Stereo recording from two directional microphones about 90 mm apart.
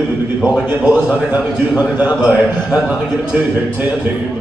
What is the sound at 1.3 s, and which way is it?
A man's voice, 15° right (ahead or behind).